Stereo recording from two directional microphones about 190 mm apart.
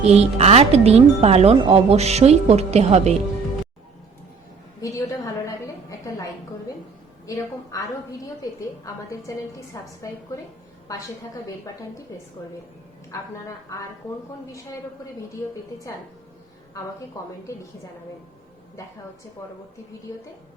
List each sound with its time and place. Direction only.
0.0 s speech: 35° right (ahead or behind)
4.8 s a woman's voice: 15° left (ahead or behind)
7.3 s a woman's voice: 15° left (ahead or behind)
13.1 s a woman's voice: 15° left (ahead or behind)